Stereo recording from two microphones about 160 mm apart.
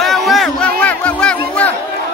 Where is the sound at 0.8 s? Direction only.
10° left (ahead or behind).